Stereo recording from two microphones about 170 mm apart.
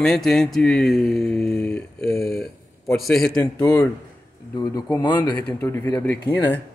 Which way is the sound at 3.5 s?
20° left (ahead or behind).